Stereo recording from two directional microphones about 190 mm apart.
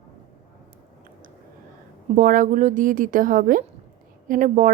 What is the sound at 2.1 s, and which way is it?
Speech, 45° right (ahead or behind).